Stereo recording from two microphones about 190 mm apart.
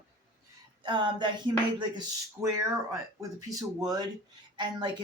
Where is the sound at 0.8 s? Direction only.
25° right (ahead or behind).